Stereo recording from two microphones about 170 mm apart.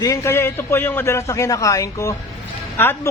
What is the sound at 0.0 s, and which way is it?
A woman's voice, 20° left (ahead or behind).